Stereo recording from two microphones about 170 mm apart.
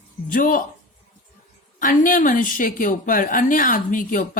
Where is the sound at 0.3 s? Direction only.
55° left (ahead or behind).